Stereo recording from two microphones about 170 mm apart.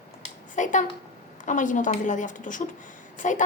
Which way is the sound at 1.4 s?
50° left (ahead or behind).